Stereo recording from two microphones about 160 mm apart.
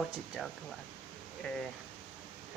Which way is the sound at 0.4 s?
Centre (ahead or behind).